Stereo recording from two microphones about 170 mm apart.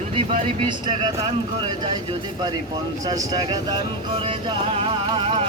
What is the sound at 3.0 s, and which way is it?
Speech, 20° right (ahead or behind).